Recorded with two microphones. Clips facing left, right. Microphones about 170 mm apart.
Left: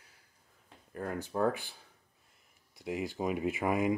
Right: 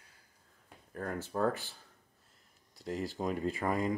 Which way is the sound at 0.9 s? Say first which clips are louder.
Left 1 dB; 5° left (ahead or behind).